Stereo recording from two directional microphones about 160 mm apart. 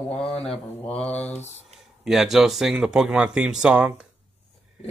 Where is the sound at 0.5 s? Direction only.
5° left (ahead or behind).